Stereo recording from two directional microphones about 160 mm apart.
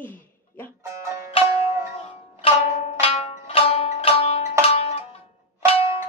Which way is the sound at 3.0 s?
40° left (ahead or behind).